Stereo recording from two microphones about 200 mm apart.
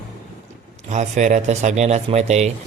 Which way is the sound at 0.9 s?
35° right (ahead or behind).